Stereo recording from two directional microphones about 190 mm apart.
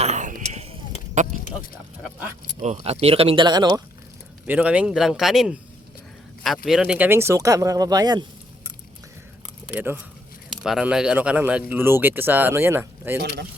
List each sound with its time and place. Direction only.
0.0 s a sound: 40° right (ahead or behind)
2.6 s speech: 35° right (ahead or behind)
4.4 s a man's voice: 5° right (ahead or behind)
6.7 s speech: 5° right (ahead or behind); by 8.3 s 20° right (ahead or behind)
9.7 s speech: 10° right (ahead or behind)